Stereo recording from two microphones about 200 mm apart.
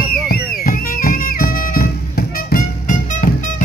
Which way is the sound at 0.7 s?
45° left (ahead or behind).